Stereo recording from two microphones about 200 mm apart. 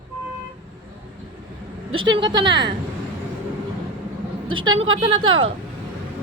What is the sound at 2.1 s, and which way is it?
Speech, 20° right (ahead or behind).